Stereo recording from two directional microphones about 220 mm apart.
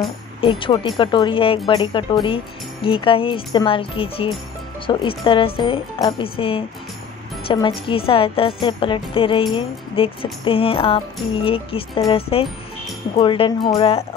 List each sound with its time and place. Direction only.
0.4 s speech: 25° left (ahead or behind)